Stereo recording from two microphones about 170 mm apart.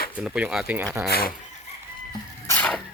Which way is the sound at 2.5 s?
10° left (ahead or behind).